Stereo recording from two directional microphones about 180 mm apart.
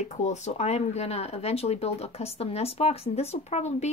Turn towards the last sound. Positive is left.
turn(degrees=35)  # may be behind; listen again after turning